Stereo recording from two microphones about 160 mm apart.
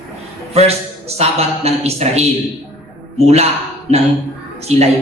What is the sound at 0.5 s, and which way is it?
A man's voice, 40° right (ahead or behind).